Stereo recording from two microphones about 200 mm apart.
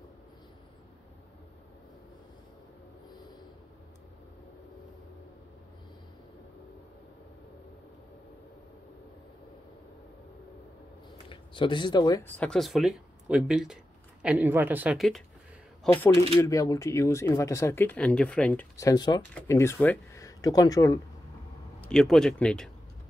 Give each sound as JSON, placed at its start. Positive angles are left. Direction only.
{"t": 11.2, "sound": "speech", "side_deg": 25}
{"t": 12.4, "sound": "speech", "side_deg": 5}
{"t": 21.8, "sound": "speech", "side_deg": 5}